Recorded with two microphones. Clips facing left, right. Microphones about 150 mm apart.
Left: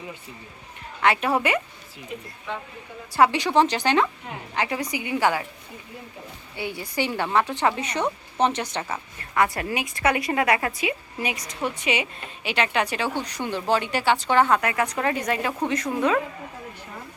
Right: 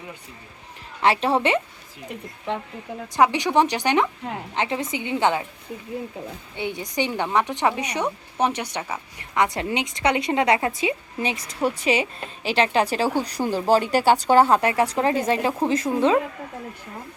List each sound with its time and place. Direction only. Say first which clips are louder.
1.0 s speech: right 2 dB; 30° right (ahead or behind)
3.2 s speech: even; 15° right (ahead or behind)
6.6 s a woman's voice: right 2 dB; 20° right (ahead or behind)